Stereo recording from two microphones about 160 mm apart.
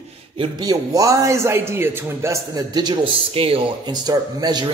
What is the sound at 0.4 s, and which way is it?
A man's voice, 25° right (ahead or behind).